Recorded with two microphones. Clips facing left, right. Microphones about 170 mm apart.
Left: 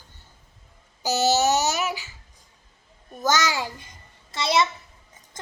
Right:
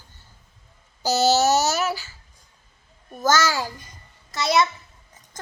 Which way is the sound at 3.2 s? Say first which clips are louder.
Right 2 dB; 15° left (ahead or behind).